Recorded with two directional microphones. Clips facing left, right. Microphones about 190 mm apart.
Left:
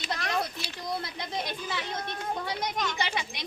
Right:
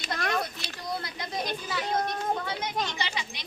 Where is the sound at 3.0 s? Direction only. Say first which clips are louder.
Left 3 dB; 55° left (ahead or behind).